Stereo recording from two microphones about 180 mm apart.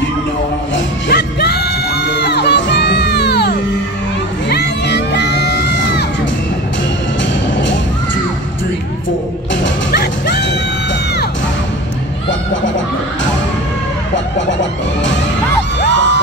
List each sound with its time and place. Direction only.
0.7 s crowd: 70° left (ahead or behind)
4.5 s music: 70° left (ahead or behind)